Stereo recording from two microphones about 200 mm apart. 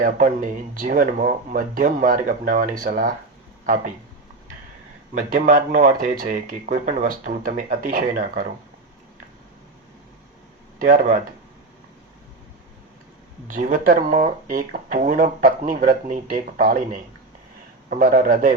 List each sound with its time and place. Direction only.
0.0 s speech: 40° right (ahead or behind)
5.1 s speech: 45° right (ahead or behind)
10.8 s speech: 40° right (ahead or behind)
13.5 s speech: 40° right (ahead or behind)
17.8 s speech: 45° right (ahead or behind)